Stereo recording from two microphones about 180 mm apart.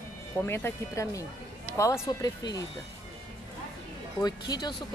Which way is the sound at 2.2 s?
20° left (ahead or behind).